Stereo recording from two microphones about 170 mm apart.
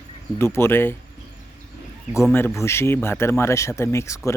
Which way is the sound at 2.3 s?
15° left (ahead or behind).